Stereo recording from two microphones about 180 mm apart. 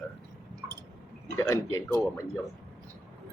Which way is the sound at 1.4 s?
15° left (ahead or behind).